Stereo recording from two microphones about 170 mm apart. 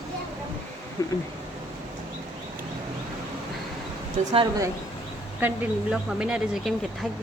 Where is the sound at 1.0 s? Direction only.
20° left (ahead or behind).